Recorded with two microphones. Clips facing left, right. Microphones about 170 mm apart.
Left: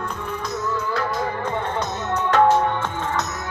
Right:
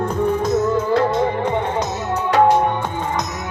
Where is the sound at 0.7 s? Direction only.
25° right (ahead or behind).